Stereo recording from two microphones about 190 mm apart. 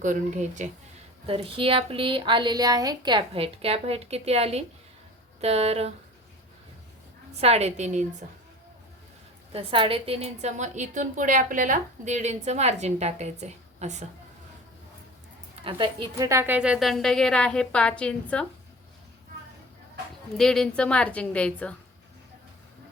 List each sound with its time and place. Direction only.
0.0 s a woman's voice: 40° right (ahead or behind)
1.3 s a woman's voice: 30° right (ahead or behind)
7.4 s a woman's voice: 35° right (ahead or behind)
9.5 s a woman's voice: 30° right (ahead or behind)
15.6 s a woman's voice: 25° right (ahead or behind); by 18.4 s 5° left (ahead or behind)
20.3 s a woman's voice: centre (ahead or behind)